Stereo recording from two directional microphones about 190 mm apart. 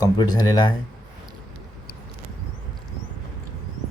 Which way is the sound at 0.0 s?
20° left (ahead or behind).